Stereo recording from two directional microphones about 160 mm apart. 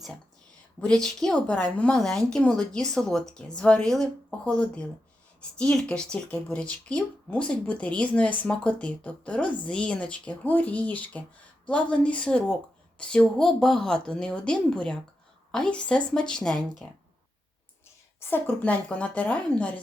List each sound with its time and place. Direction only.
0.8 s a woman's voice: 5° left (ahead or behind)
18.2 s speech: 15° left (ahead or behind)